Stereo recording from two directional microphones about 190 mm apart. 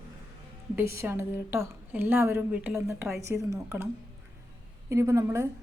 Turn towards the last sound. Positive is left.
turn(degrees=-15)  # may be behind; listen again after turning